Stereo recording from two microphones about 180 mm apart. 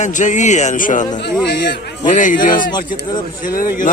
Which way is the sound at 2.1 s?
45° left (ahead or behind).